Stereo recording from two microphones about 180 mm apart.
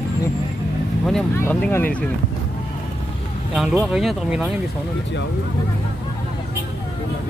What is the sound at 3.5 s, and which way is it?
Speech, centre (ahead or behind).